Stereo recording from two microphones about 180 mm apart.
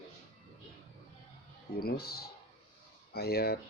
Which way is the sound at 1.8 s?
60° left (ahead or behind).